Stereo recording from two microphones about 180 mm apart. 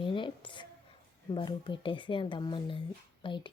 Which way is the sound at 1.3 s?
25° left (ahead or behind).